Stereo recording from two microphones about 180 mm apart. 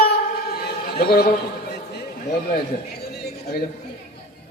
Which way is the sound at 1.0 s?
60° left (ahead or behind).